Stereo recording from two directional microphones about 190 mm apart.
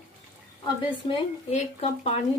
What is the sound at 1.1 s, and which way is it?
Speech, 35° left (ahead or behind).